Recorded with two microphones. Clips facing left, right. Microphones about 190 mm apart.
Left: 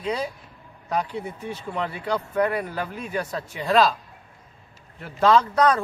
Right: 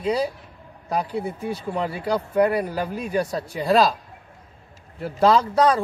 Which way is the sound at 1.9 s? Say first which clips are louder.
Right 3 dB; 35° right (ahead or behind).